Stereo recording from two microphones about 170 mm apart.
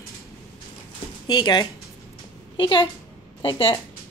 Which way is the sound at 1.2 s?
25° left (ahead or behind).